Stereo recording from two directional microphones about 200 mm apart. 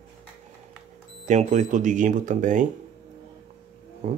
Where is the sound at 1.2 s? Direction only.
35° right (ahead or behind).